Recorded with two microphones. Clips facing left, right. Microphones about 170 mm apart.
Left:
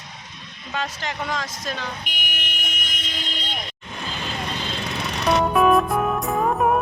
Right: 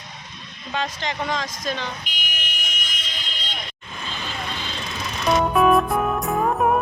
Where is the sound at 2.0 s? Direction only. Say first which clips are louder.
Left 1 dB; 65° left (ahead or behind).